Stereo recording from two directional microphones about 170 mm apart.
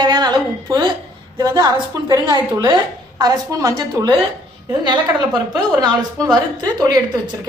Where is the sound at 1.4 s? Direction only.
25° right (ahead or behind).